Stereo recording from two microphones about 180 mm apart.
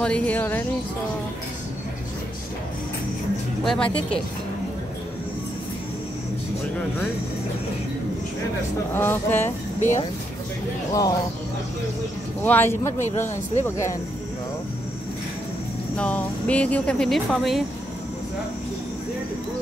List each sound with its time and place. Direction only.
0.0 s speech: 5° left (ahead or behind)
3.6 s speech: 5° left (ahead or behind)
8.9 s speech: 10° left (ahead or behind)
9.8 s speech: 40° left (ahead or behind)
10.9 s speech: 20° left (ahead or behind)
12.4 s speech: 10° left (ahead or behind)
16.0 s speech: 5° left (ahead or behind)